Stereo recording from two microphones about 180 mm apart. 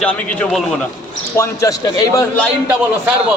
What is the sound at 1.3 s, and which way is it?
Speech, 15° left (ahead or behind).